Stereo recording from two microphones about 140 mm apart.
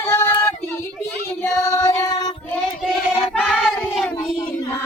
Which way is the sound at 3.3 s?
Centre (ahead or behind).